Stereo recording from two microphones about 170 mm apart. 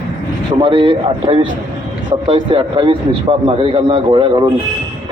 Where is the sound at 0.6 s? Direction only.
30° right (ahead or behind).